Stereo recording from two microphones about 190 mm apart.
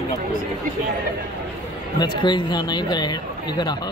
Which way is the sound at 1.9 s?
25° left (ahead or behind).